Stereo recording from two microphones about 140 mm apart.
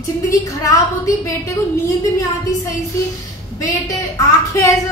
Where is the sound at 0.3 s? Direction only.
25° left (ahead or behind).